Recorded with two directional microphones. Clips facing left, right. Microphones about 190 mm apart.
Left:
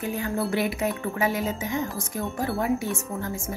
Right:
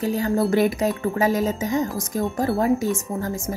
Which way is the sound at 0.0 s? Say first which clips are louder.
Right 6 dB; 35° right (ahead or behind).